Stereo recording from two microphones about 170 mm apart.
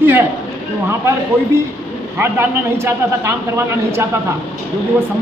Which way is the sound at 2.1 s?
15° right (ahead or behind).